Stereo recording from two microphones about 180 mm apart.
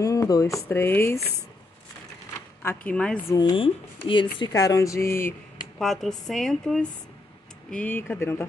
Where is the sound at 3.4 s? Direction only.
25° left (ahead or behind).